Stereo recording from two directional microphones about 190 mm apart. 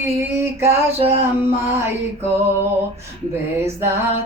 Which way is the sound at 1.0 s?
30° right (ahead or behind).